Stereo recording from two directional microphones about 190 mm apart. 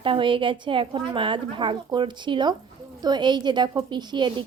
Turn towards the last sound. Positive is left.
turn(degrees=-25)  # may be behind; listen again after turning